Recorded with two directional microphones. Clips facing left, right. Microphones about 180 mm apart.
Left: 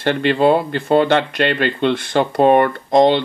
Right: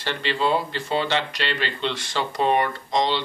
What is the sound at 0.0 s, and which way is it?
Speech, 55° left (ahead or behind).